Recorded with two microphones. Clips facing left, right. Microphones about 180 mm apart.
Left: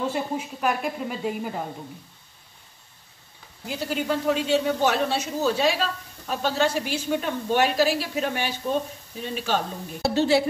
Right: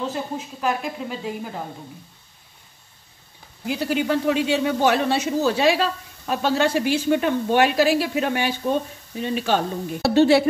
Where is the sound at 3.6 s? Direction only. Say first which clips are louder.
Right 4 dB; 75° right (ahead or behind).